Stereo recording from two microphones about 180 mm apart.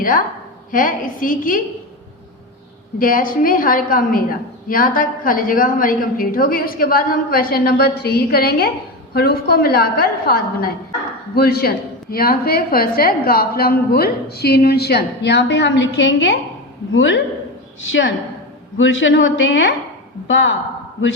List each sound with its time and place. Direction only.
0.0 s a woman's voice: 50° left (ahead or behind)
3.0 s a woman's voice: 50° left (ahead or behind); by 17.2 s 90° left
18.8 s a woman's voice: 90° left